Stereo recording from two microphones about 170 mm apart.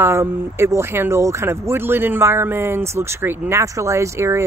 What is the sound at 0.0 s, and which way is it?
Speech, 15° right (ahead or behind).